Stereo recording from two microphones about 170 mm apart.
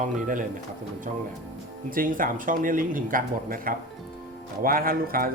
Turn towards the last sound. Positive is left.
turn(degrees=-55)  # may be behind; listen again after turning